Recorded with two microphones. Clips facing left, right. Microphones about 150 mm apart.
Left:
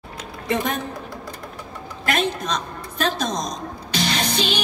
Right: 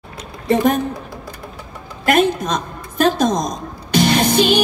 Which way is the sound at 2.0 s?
50° right (ahead or behind).